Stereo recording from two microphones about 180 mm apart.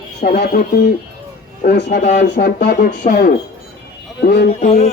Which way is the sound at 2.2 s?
70° left (ahead or behind).